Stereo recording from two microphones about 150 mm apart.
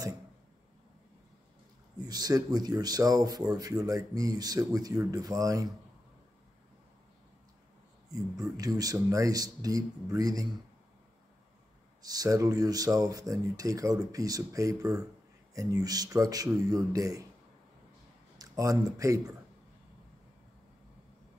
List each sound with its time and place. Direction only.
2.0 s speech: 25° right (ahead or behind)
8.1 s speech: 25° right (ahead or behind)
12.0 s speech: 25° right (ahead or behind)
18.4 s speech: 20° right (ahead or behind)